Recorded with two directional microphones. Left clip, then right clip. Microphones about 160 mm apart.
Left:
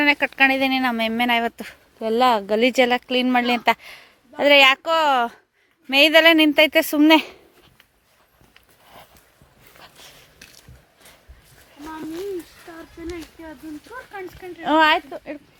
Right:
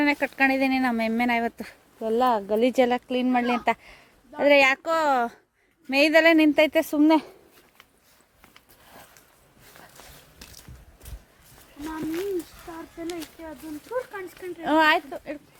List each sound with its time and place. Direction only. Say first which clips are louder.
0.0 s speech: left 5 dB; 5° right (ahead or behind)
2.0 s speech: left 4 dB; 10° left (ahead or behind)
10.4 s mechanisms: left 2 dB; 65° right (ahead or behind)
13.1 s speech: left 2 dB; 30° left (ahead or behind)
14.6 s speech: left 4 dB; 40° left (ahead or behind)